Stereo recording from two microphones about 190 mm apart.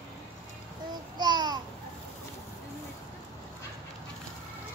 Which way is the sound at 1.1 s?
20° right (ahead or behind).